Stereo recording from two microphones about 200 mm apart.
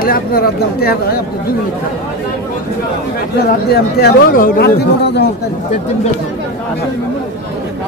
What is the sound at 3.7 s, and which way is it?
A man's voice, 50° left (ahead or behind).